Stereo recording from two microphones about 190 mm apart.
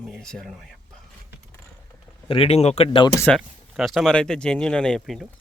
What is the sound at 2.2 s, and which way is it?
Speech, 30° left (ahead or behind).